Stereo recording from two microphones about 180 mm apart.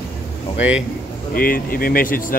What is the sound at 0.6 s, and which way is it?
Speech, 5° right (ahead or behind).